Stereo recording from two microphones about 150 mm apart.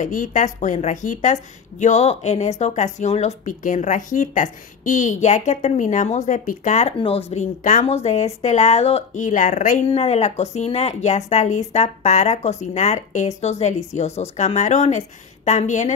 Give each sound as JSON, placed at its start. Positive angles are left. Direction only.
{"t": 0.0, "sound": "speech", "side_deg": 55}
{"t": 9.8, "sound": "speech", "side_deg": 45}